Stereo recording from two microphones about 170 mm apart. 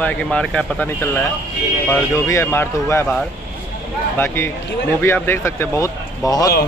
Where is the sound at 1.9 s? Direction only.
15° left (ahead or behind).